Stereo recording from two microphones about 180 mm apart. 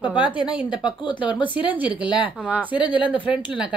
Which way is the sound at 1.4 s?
10° right (ahead or behind).